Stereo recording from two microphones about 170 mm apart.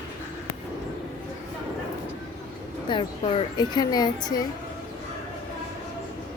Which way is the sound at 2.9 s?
25° left (ahead or behind).